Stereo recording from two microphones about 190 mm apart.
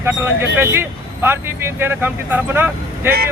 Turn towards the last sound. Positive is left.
turn(degrees=-10)  # may be behind; listen again after turning